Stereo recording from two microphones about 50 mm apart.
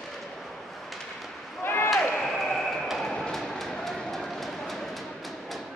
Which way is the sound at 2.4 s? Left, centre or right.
Centre.